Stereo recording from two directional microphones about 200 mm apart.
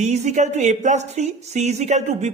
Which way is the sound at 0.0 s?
35° right (ahead or behind).